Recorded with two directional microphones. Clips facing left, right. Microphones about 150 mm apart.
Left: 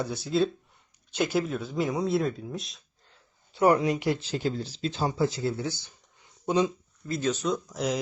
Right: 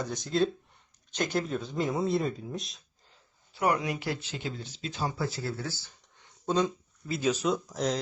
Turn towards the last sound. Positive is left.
turn(degrees=0)  # may be behind; listen again after turning